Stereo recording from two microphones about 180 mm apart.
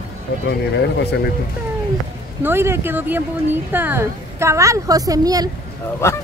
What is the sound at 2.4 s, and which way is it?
A woman's voice, 15° right (ahead or behind).